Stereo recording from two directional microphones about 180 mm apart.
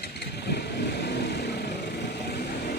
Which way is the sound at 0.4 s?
65° left (ahead or behind).